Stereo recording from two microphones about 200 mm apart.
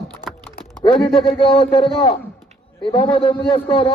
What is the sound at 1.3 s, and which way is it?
A man's voice, 25° left (ahead or behind).